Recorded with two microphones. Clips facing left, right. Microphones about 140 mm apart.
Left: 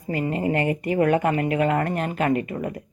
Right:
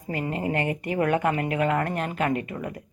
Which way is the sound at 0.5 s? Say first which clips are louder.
Left 4 dB; 35° left (ahead or behind).